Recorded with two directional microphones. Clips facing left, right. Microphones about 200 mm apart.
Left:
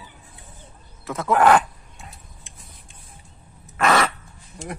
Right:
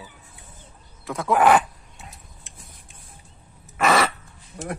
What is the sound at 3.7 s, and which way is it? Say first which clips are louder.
Crow: even; 5° right (ahead or behind).